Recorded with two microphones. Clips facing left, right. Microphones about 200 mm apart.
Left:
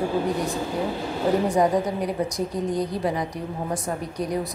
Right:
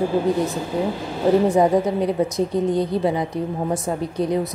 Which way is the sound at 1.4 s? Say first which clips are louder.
Right 4 dB; 25° right (ahead or behind).